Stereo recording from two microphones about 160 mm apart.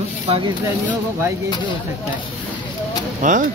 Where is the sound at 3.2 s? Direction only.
55° right (ahead or behind).